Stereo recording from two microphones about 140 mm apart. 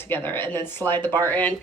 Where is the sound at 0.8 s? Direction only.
20° right (ahead or behind).